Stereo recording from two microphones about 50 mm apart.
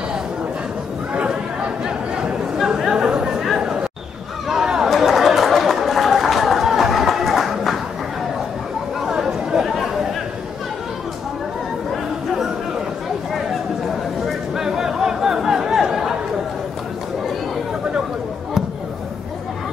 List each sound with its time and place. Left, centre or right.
1.1 s chatter: right
2.5 s chatter: centre
4.5 s a sound: centre
4.9 s chatter: centre
9.0 s chatter: centre
13.3 s a sound: centre